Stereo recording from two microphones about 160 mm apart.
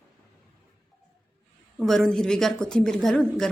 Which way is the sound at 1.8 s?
Centre (ahead or behind).